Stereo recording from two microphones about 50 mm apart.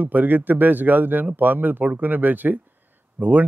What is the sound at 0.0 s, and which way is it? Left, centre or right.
A man's voice, right.